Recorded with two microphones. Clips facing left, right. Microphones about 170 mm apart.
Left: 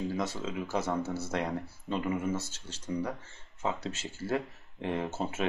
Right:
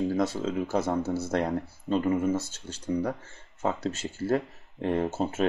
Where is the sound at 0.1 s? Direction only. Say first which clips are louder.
Right 7 dB; 50° right (ahead or behind).